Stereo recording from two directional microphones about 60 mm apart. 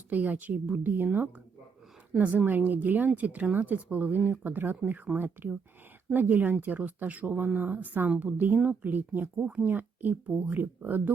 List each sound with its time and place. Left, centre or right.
0.1 s speech: right
9.4 s speech: centre
9.6 s speech: right